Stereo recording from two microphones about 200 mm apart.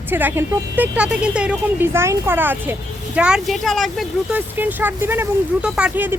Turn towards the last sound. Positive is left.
turn(degrees=-5)  # may be behind; listen again after turning